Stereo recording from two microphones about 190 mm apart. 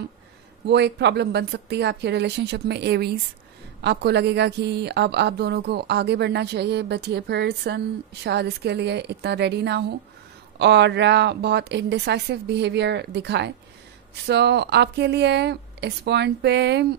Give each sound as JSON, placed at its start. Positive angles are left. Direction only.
{"t": 0.7, "sound": "a woman's voice", "side_deg": -65}